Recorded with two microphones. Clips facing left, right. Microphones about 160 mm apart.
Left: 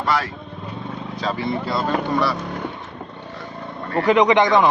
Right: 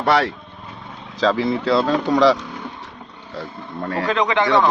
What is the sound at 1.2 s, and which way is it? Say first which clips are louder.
Speech: right 6 dB; 90° right.